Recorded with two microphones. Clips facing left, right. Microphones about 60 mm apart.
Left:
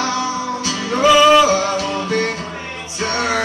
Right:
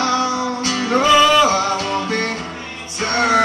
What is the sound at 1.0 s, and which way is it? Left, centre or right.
Music, centre.